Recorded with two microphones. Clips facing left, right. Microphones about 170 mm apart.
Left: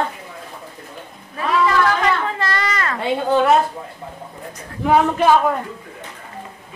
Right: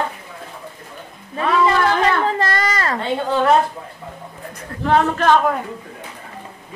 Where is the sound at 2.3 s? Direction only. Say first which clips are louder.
Right 2 dB; 40° right (ahead or behind).